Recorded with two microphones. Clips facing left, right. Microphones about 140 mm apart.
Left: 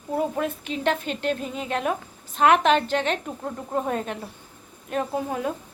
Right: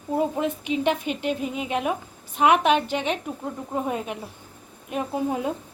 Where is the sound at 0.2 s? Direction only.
20° right (ahead or behind).